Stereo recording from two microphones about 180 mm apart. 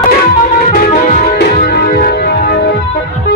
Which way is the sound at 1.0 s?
50° left (ahead or behind).